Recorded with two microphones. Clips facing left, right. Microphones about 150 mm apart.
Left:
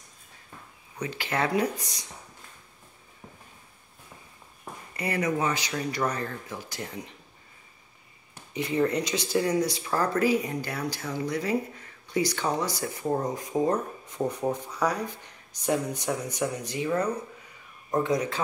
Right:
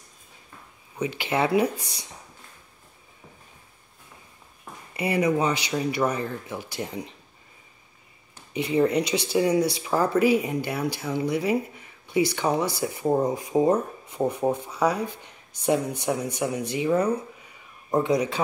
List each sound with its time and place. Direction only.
0.9 s speech: 15° right (ahead or behind)
4.9 s speech: 15° right (ahead or behind)
8.7 s speech: 10° right (ahead or behind)
14.7 s speech: 25° right (ahead or behind)
16.3 s speech: 10° right (ahead or behind)